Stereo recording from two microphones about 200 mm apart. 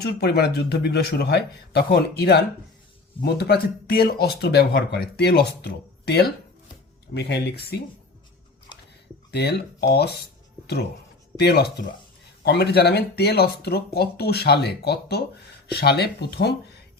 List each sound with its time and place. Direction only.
0.0 s speech: 55° left (ahead or behind)
8.7 s a sound: 25° left (ahead or behind)
9.3 s speech: 55° left (ahead or behind)
11.3 s speech: 55° left (ahead or behind)